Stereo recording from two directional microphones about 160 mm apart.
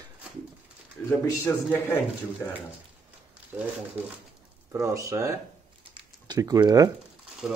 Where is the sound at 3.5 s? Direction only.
10° right (ahead or behind).